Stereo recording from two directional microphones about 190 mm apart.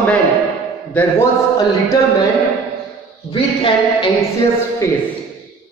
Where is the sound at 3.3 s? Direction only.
30° left (ahead or behind).